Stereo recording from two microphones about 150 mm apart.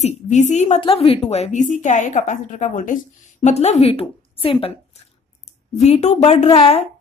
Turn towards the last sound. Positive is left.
turn(degrees=45)  # may be behind; listen again after turning